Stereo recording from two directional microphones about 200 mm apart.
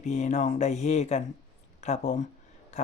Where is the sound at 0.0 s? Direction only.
35° left (ahead or behind).